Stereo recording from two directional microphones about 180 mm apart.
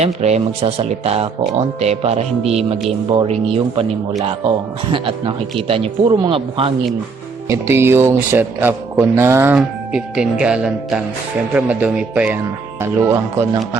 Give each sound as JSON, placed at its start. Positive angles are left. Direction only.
{"t": 0.0, "sound": "speech", "side_deg": -40}
{"t": 7.4, "sound": "speech", "side_deg": -15}